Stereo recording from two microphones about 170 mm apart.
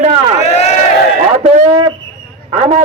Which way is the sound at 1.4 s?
45° right (ahead or behind).